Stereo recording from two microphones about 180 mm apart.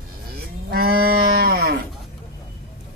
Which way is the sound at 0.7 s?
60° right (ahead or behind).